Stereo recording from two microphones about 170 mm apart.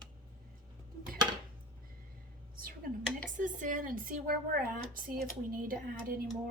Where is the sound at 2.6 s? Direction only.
55° right (ahead or behind).